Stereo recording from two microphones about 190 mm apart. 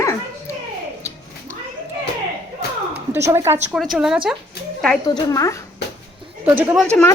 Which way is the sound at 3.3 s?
15° right (ahead or behind).